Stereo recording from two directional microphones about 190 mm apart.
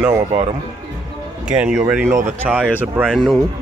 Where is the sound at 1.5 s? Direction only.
5° right (ahead or behind).